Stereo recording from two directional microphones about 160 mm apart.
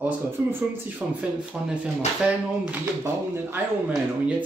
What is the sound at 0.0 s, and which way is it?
Speech, 10° right (ahead or behind).